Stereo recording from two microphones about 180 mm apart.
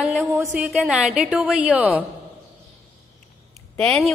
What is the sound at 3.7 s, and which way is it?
Speech, 5° left (ahead or behind).